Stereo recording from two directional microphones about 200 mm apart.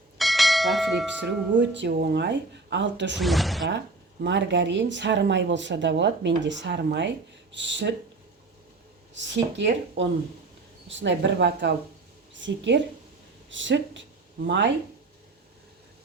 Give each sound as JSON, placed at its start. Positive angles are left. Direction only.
{"t": 0.2, "sound": "bell", "side_deg": 0}
{"t": 1.2, "sound": "speech", "side_deg": -60}
{"t": 3.2, "sound": "speech", "side_deg": 0}
{"t": 3.7, "sound": "speech", "side_deg": -60}
{"t": 9.1, "sound": "speech", "side_deg": -65}